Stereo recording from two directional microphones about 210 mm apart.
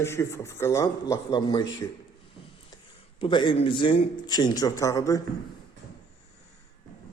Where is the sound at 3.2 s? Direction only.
20° left (ahead or behind).